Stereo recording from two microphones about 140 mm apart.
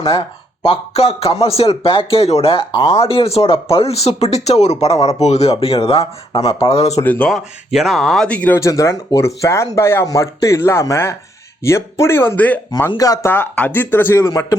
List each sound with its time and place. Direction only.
0.0 s speech: 40° left (ahead or behind)
7.0 s speech: 10° left (ahead or behind)
7.3 s speech: centre (ahead or behind)
8.5 s speech: 20° left (ahead or behind)
12.9 s speech: 25° left (ahead or behind)
13.3 s speech: 15° left (ahead or behind)